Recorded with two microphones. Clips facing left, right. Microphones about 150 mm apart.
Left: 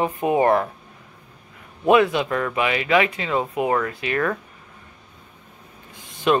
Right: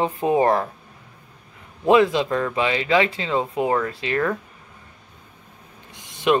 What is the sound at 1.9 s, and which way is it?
Speech, 25° right (ahead or behind).